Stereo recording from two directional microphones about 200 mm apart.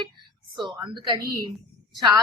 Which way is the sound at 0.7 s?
20° right (ahead or behind).